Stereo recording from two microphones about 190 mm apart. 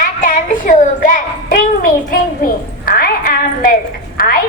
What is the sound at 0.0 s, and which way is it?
Child singing, 45° left (ahead or behind).